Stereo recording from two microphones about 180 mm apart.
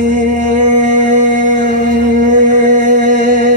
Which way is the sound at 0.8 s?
45° right (ahead or behind).